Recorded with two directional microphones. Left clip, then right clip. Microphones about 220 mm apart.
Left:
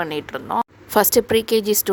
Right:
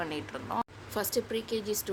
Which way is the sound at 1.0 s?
50° left (ahead or behind).